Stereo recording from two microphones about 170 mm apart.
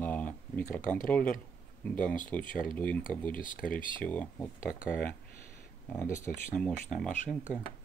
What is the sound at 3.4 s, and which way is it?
Speech, 50° left (ahead or behind).